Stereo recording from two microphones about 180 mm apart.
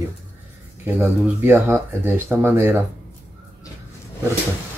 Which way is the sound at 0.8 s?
10° right (ahead or behind).